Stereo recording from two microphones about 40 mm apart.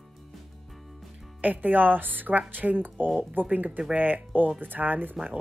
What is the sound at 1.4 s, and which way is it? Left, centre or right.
Speech, right.